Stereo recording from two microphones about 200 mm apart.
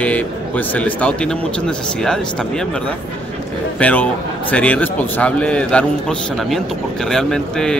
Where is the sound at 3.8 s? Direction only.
5° left (ahead or behind).